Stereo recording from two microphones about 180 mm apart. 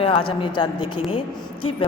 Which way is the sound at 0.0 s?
30° left (ahead or behind).